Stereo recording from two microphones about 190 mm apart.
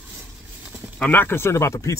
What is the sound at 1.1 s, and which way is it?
Speech, 10° left (ahead or behind).